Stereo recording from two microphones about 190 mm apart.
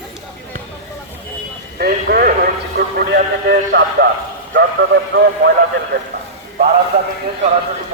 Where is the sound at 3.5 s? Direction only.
60° right (ahead or behind).